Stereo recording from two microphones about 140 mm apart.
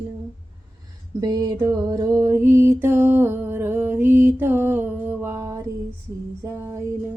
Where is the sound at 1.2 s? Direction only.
30° right (ahead or behind).